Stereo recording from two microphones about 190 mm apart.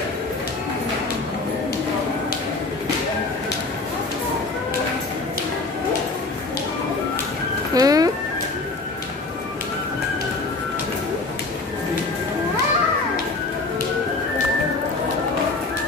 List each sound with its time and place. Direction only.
7.7 s music: 20° right (ahead or behind)